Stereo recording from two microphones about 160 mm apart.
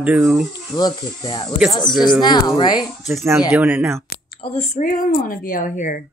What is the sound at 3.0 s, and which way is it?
Speech, 15° right (ahead or behind).